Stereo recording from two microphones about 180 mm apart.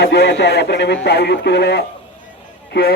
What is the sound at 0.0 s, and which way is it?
A man's voice, 65° left (ahead or behind).